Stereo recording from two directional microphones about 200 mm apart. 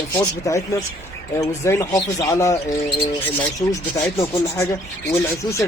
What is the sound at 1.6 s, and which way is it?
Speech, 15° left (ahead or behind).